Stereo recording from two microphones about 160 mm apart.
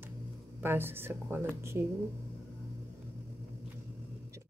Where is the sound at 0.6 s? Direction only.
15° right (ahead or behind).